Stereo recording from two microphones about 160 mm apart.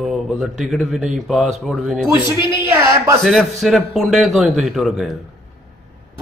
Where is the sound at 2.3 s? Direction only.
15° right (ahead or behind).